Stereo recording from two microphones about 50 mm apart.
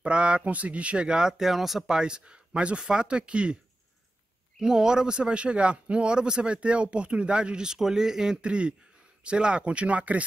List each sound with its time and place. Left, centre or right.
0.0 s a man's voice: right
1.4 s speech: centre; by 3.5 s right
4.6 s a man's voice: centre
8.4 s a man's voice: right